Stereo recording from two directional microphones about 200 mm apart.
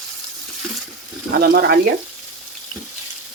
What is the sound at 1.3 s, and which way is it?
Speech, 50° right (ahead or behind).